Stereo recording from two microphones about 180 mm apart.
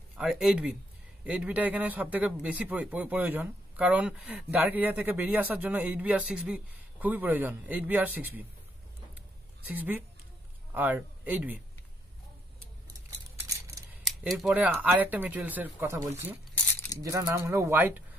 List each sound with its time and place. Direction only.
0.2 s a man's voice: 5° right (ahead or behind)
9.7 s a man's voice: 10° right (ahead or behind)
13.4 s scissors: 15° right (ahead or behind)
14.0 s a man's voice: centre (ahead or behind)